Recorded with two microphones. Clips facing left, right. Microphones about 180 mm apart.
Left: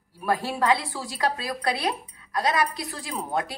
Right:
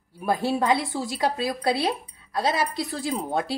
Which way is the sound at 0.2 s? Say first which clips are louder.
Right 2 dB; 20° right (ahead or behind).